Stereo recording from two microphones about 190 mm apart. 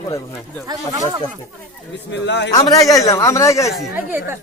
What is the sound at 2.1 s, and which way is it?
Speech, 65° left (ahead or behind).